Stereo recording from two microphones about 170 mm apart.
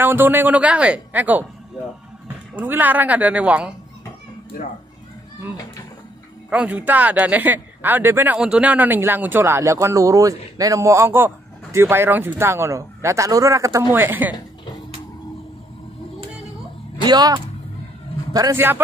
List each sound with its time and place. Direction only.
0.0 s speech: 10° right (ahead or behind)
2.6 s speech: 10° right (ahead or behind)
6.5 s speech: 10° right (ahead or behind)
17.0 s speech: 25° right (ahead or behind)